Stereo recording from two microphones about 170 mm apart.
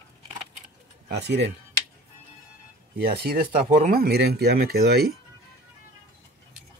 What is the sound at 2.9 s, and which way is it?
Speech, 65° right (ahead or behind).